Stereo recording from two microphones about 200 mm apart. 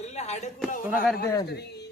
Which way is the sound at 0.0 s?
35° left (ahead or behind).